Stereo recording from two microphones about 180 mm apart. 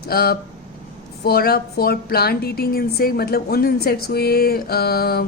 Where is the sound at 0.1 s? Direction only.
55° left (ahead or behind).